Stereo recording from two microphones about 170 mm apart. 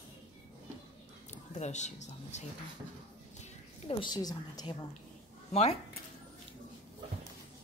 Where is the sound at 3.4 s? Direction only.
30° left (ahead or behind).